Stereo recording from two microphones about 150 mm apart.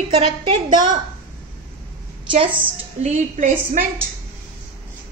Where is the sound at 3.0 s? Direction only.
50° right (ahead or behind).